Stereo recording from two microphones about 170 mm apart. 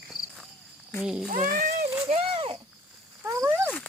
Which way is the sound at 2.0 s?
35° right (ahead or behind).